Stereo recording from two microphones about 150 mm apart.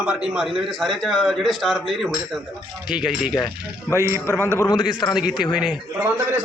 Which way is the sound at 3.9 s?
20° right (ahead or behind).